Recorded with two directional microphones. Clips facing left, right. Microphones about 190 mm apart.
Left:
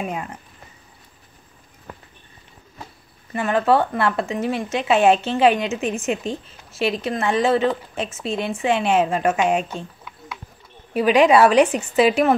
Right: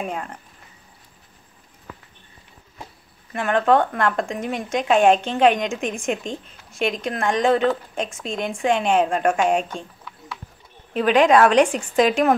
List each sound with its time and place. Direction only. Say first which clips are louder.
0.0 s speech: left 1 dB; 5° left (ahead or behind)
3.3 s speech: even; 5° left (ahead or behind)